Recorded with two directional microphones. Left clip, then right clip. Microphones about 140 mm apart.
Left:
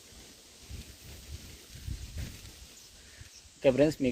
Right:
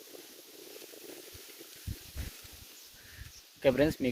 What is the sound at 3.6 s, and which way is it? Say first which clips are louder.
Speech: left 2 dB; 5° left (ahead or behind).